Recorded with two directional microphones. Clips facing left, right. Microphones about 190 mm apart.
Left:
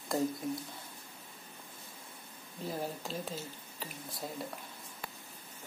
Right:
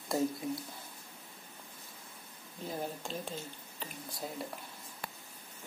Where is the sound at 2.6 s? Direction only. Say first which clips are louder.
Left 1 dB; centre (ahead or behind).